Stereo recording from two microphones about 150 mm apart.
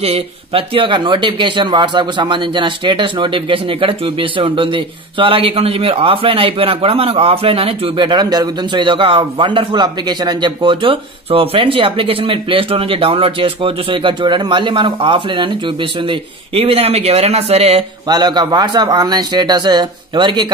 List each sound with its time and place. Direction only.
0.0 s speech: 40° right (ahead or behind)
18.0 s a man's voice: 30° right (ahead or behind)